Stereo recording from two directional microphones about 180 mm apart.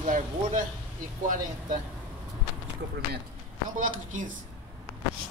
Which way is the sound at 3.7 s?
45° right (ahead or behind).